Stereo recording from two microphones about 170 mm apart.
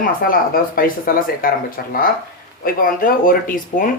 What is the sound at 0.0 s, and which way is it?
Speech, 55° left (ahead or behind).